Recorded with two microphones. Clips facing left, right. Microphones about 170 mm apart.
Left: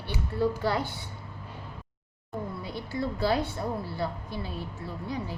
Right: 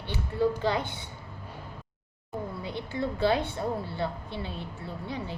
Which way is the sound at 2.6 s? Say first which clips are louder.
Right 1 dB; 25° right (ahead or behind).